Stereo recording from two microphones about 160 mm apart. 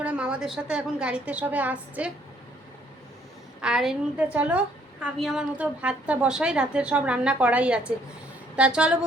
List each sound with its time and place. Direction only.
0.0 s a woman's voice: 5° right (ahead or behind)
3.6 s a woman's voice: 5° right (ahead or behind)